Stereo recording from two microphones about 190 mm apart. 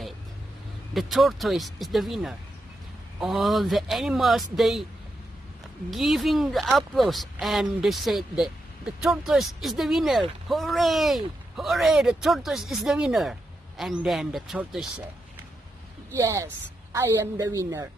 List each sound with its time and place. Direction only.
0.9 s speech: centre (ahead or behind)
5.9 s speech: centre (ahead or behind)
16.2 s a woman's voice: 15° right (ahead or behind)